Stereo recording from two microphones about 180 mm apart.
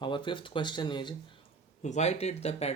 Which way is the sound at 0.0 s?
25° left (ahead or behind).